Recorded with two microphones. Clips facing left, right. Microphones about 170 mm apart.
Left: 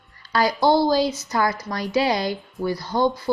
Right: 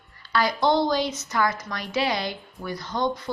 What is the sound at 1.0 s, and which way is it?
Speech, 10° left (ahead or behind).